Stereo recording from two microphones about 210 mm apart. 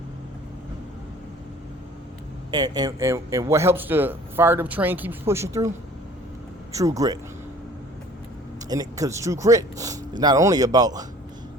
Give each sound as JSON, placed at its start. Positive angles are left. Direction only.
{"t": 2.5, "sound": "a man's voice", "side_deg": -20}
{"t": 6.7, "sound": "a man's voice", "side_deg": -15}
{"t": 8.7, "sound": "a man's voice", "side_deg": -15}